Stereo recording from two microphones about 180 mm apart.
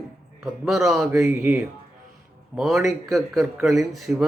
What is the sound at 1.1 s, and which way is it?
Speech, 10° right (ahead or behind).